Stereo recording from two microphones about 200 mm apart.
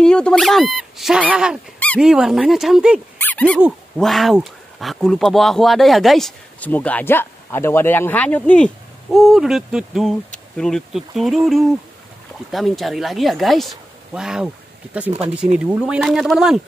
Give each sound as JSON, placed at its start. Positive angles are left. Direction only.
{"t": 0.0, "sound": "speech", "side_deg": 5}
{"t": 3.2, "sound": "dog", "side_deg": 10}
{"t": 3.6, "sound": "speech", "side_deg": 0}
{"t": 15.0, "sound": "speech", "side_deg": -30}
{"t": 15.6, "sound": "speech", "side_deg": -5}